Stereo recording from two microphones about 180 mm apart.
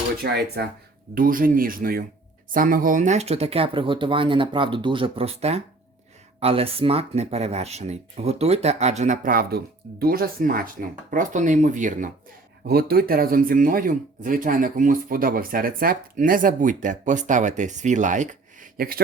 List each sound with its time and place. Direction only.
0.2 s speech: 65° right (ahead or behind)
1.1 s speech: 50° right (ahead or behind)
12.6 s speech: 60° right (ahead or behind)